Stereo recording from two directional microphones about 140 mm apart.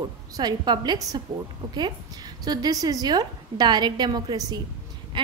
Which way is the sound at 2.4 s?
25° right (ahead or behind).